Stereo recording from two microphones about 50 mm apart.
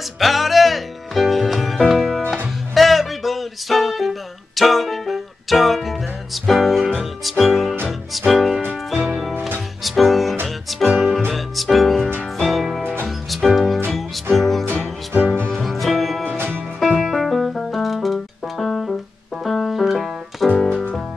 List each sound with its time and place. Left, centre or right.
0.2 s music: centre
9.8 s music: centre
14.8 s music: right
15.5 s music: centre
16.3 s music: right
17.1 s music: centre